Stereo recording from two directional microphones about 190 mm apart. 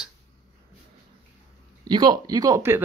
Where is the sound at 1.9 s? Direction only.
20° right (ahead or behind).